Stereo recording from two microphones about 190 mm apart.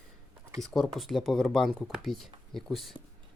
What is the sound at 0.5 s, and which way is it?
Speech, centre (ahead or behind).